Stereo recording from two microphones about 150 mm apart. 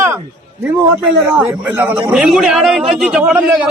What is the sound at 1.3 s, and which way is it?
Speech, 10° right (ahead or behind).